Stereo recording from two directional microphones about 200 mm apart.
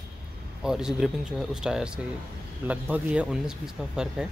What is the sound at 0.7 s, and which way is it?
Speech, 5° right (ahead or behind).